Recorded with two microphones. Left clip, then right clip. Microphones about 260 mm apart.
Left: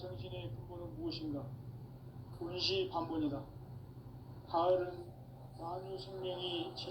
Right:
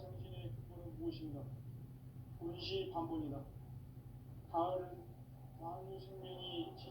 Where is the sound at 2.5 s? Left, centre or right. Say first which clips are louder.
Left 9 dB; left.